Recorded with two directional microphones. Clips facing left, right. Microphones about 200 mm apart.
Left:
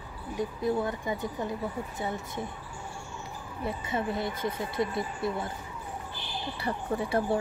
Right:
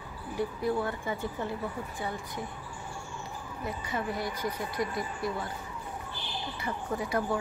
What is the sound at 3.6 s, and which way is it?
Speech, 25° left (ahead or behind).